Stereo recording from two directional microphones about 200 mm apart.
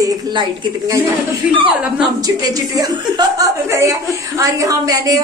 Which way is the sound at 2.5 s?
20° right (ahead or behind).